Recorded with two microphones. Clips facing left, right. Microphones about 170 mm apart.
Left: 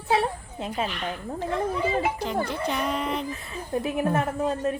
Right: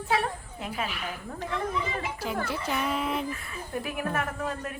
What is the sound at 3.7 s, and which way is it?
A woman's voice, 25° left (ahead or behind).